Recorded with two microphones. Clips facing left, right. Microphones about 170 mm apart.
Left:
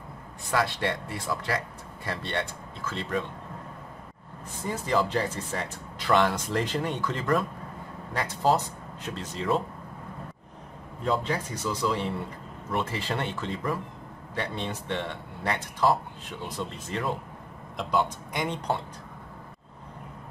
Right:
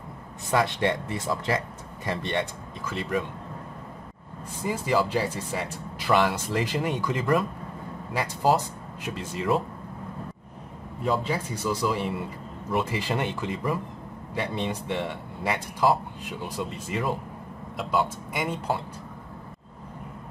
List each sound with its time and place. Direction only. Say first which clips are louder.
0.5 s speech: right 3 dB; 20° right (ahead or behind)
4.6 s speech: right 2 dB; 10° right (ahead or behind)
11.1 s speech: right 1 dB; 10° right (ahead or behind)